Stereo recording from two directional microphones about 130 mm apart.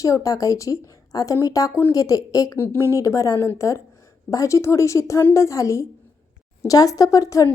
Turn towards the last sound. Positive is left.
turn(degrees=25)  # may be behind; listen again after turning